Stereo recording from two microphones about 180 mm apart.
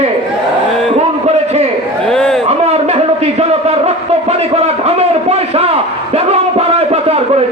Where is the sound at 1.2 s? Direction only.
35° right (ahead or behind).